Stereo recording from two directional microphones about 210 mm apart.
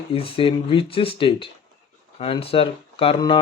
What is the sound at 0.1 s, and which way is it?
Speech, 25° left (ahead or behind).